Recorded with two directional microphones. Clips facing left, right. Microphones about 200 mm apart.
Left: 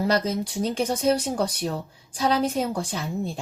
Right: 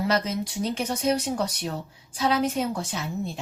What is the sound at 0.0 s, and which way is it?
A woman's voice, 35° left (ahead or behind).